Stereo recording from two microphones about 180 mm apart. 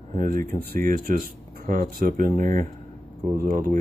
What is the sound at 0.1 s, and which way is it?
Speech, 45° right (ahead or behind).